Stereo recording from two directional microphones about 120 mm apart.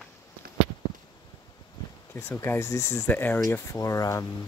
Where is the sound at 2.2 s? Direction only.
20° left (ahead or behind).